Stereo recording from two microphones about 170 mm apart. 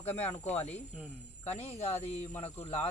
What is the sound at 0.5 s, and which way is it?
Speech, 40° left (ahead or behind).